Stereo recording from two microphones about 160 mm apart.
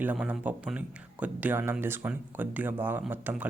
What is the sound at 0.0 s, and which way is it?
Speech, 10° right (ahead or behind).